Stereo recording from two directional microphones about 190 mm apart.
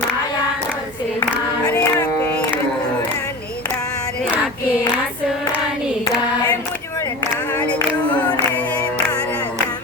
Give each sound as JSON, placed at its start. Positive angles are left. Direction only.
{"t": 1.6, "sound": "music", "side_deg": 20}
{"t": 7.6, "sound": "music", "side_deg": 5}